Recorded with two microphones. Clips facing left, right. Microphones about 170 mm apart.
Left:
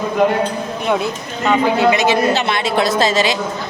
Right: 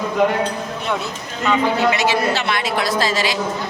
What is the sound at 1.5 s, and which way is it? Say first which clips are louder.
A woman's voice: left 3 dB; 20° left (ahead or behind).